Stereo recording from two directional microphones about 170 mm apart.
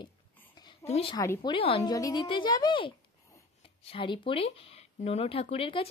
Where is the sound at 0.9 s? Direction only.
35° left (ahead or behind).